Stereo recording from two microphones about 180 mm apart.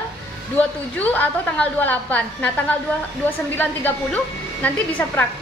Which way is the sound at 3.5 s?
10° left (ahead or behind).